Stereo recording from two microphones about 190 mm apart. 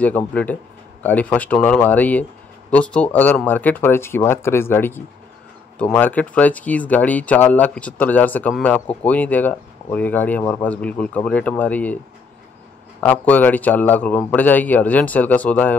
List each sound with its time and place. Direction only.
0.0 s speech: 10° left (ahead or behind)
13.0 s speech: 10° left (ahead or behind)